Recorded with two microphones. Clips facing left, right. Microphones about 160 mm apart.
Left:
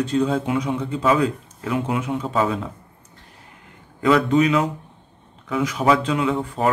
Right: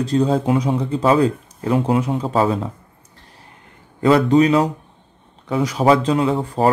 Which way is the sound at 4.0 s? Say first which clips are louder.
Right 3 dB; 35° right (ahead or behind).